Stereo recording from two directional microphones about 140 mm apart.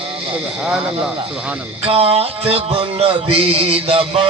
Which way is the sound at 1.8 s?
40° right (ahead or behind).